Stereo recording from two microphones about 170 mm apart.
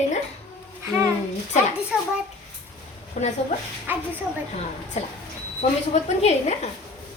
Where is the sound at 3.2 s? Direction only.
45° left (ahead or behind).